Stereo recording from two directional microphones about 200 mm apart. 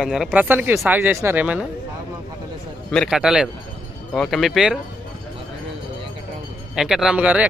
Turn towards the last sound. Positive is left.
turn(degrees=-5)  # may be behind; listen again after turning